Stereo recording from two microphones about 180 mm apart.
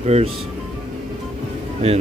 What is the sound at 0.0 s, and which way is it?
Speech, 35° right (ahead or behind).